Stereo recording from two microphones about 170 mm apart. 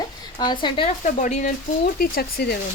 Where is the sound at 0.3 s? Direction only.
25° left (ahead or behind).